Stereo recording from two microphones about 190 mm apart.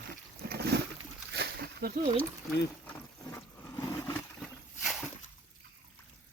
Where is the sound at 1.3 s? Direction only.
60° right (ahead or behind).